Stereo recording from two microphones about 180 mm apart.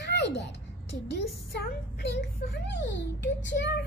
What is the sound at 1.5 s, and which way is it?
A child's voice, 65° left (ahead or behind).